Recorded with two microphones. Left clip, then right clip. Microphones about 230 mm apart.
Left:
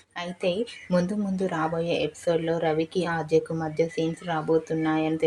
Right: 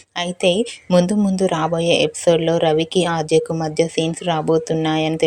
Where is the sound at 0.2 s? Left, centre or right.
Right.